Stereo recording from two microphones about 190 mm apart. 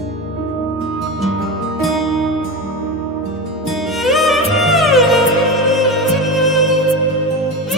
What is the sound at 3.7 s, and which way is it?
Music, centre (ahead or behind).